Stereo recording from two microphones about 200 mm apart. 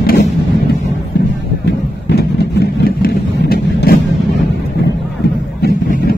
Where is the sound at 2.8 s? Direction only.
50° left (ahead or behind).